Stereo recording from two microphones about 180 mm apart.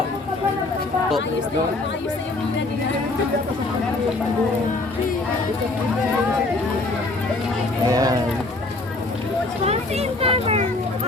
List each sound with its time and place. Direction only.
7.9 s speech: 20° right (ahead or behind)
9.6 s a child's voice: 35° right (ahead or behind)